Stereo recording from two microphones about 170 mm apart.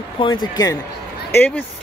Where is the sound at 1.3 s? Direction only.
10° left (ahead or behind).